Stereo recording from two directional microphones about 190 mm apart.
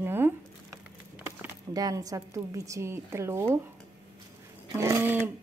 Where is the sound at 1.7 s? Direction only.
20° right (ahead or behind).